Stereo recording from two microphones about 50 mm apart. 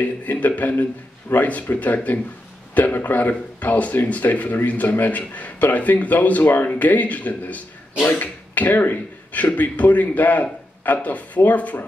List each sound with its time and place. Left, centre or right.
0.0 s speech: left